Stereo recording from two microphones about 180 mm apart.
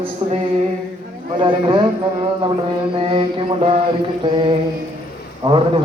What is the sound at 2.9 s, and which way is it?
A man's voice, 30° right (ahead or behind).